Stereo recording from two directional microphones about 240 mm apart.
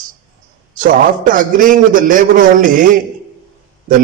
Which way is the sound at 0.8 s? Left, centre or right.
Right.